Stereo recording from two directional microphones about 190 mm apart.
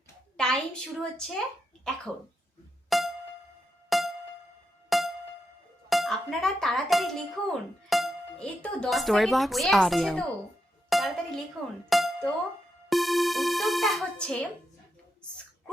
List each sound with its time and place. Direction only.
0.3 s a woman's voice: 5° left (ahead or behind)
2.9 s music: centre (ahead or behind)
5.9 s speech: centre (ahead or behind)
11.9 s music: centre (ahead or behind)